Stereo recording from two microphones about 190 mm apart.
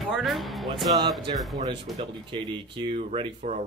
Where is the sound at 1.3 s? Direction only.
25° right (ahead or behind).